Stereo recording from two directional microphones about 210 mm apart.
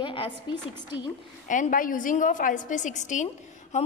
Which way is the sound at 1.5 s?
40° left (ahead or behind).